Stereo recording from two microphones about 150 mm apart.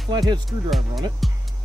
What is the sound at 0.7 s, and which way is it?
Music, centre (ahead or behind).